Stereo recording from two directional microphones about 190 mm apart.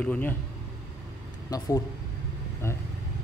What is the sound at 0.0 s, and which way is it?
Speech, 10° left (ahead or behind).